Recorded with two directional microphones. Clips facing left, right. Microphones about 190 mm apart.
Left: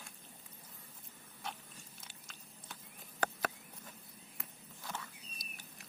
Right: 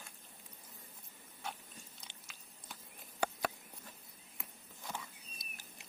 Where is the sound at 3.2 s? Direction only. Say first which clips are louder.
Right 1 dB; 10° right (ahead or behind).